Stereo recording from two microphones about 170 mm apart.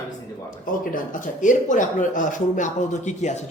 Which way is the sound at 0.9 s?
50° left (ahead or behind).